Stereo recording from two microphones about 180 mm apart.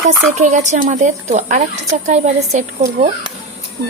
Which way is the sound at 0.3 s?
40° right (ahead or behind).